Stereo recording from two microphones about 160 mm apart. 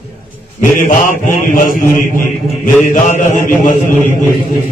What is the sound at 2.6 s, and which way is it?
Speech, 55° left (ahead or behind).